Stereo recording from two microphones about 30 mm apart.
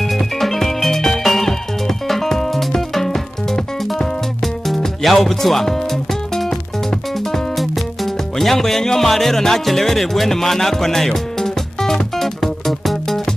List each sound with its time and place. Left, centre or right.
0.0 s music: centre
4.4 s music: centre